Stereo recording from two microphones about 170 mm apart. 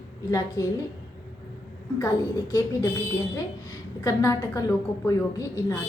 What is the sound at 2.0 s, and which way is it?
Speech, 20° left (ahead or behind).